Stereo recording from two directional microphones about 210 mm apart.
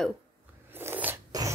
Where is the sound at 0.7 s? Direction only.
10° right (ahead or behind).